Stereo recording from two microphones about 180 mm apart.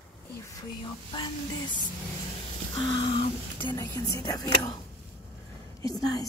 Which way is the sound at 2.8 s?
25° left (ahead or behind).